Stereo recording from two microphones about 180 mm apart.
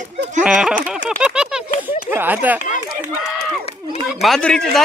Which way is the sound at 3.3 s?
5° left (ahead or behind).